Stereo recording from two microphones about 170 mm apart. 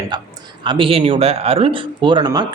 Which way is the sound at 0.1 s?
25° right (ahead or behind).